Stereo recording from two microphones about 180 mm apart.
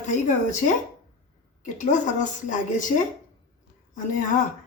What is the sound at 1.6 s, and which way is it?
A woman's voice, 45° left (ahead or behind).